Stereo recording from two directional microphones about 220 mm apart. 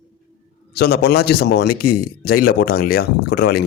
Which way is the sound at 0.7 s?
45° left (ahead or behind).